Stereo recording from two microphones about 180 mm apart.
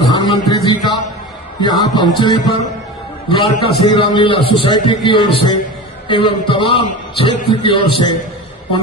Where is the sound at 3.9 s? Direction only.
25° left (ahead or behind).